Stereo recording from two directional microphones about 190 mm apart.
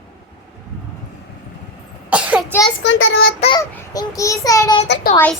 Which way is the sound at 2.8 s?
85° left.